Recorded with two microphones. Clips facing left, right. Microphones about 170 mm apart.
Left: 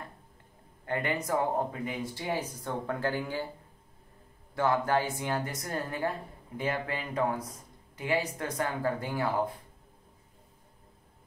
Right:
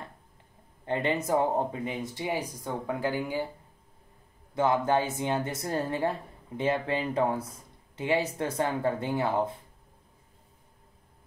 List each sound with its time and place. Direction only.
0.8 s speech: 25° right (ahead or behind)
4.6 s speech: 20° right (ahead or behind)